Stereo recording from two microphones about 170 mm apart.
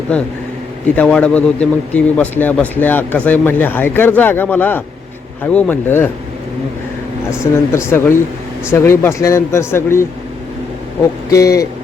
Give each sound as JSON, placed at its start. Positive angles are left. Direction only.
{"t": 0.9, "sound": "a man's voice", "side_deg": 5}
{"t": 7.3, "sound": "a man's voice", "side_deg": 15}
{"t": 11.3, "sound": "speech", "side_deg": 20}